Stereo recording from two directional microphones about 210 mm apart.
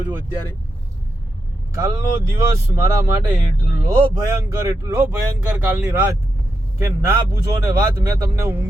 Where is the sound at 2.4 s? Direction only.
15° right (ahead or behind).